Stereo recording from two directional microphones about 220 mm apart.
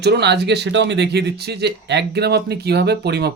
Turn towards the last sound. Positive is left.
turn(degrees=-50)  # may be behind; listen again after turning